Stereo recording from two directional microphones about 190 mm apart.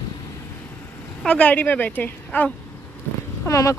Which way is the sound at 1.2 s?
5° left (ahead or behind).